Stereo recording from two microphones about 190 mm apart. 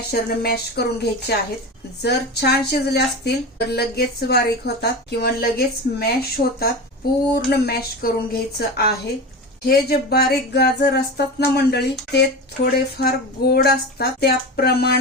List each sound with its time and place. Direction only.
0.1 s speech: 55° left (ahead or behind)